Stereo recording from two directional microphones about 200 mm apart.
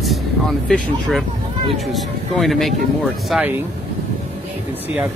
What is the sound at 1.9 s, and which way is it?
Speech, centre (ahead or behind).